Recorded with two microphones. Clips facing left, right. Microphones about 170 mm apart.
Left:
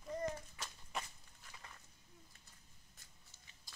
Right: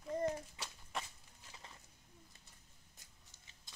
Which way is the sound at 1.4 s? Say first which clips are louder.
Right 1 dB; 25° right (ahead or behind).